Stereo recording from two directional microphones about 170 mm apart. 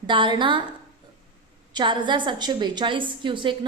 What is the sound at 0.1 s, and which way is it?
Speech, 30° right (ahead or behind).